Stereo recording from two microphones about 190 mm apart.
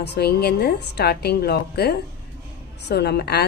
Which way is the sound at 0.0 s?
60° left (ahead or behind).